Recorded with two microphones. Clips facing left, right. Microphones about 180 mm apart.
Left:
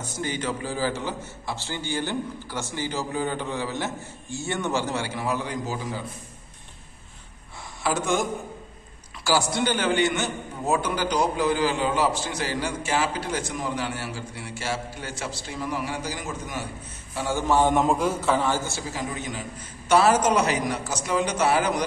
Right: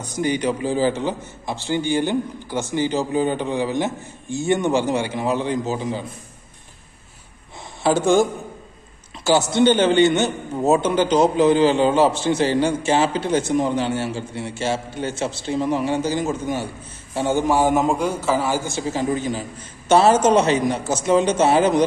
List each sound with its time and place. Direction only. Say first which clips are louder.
0.0 s a man's voice: right 8 dB; 15° right (ahead or behind)
7.8 s a man's voice: right 8 dB; 30° right (ahead or behind)